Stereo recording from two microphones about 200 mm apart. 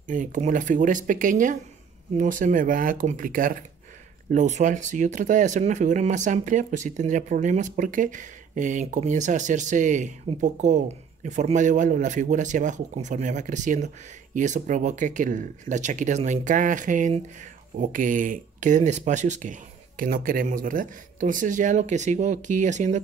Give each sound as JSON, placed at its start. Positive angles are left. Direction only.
{"t": 0.0, "sound": "speech", "side_deg": -40}